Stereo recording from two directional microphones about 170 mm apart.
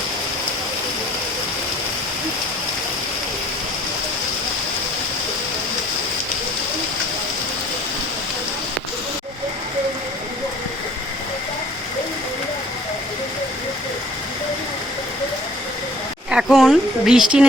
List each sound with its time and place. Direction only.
16.3 s a woman's voice: 5° right (ahead or behind)